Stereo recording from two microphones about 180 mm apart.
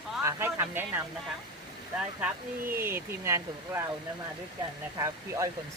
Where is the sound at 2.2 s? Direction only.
10° right (ahead or behind).